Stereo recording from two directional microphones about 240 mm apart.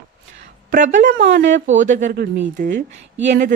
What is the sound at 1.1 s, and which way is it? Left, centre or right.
Speech, right.